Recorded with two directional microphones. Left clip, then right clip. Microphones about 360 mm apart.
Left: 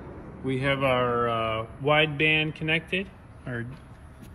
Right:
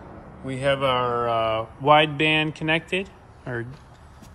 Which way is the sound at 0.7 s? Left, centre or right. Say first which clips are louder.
Right 3 dB; centre.